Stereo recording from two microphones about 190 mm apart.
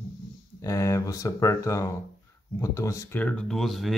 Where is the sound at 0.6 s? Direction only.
15° left (ahead or behind).